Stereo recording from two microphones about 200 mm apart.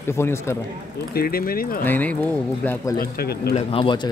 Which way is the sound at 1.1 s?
50° left (ahead or behind).